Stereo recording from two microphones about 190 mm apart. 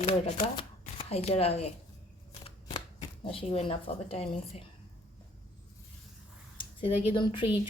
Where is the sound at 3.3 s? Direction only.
30° left (ahead or behind).